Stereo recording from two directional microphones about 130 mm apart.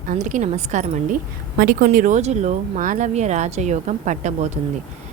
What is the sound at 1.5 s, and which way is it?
A woman's voice, 90° right.